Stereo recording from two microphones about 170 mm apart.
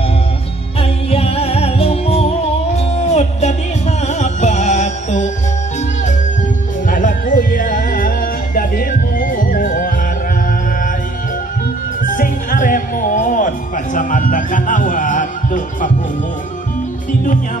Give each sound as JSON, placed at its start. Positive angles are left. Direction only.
{"t": 0.7, "sound": "music", "side_deg": 35}
{"t": 6.9, "sound": "music", "side_deg": 50}
{"t": 12.0, "sound": "music", "side_deg": 50}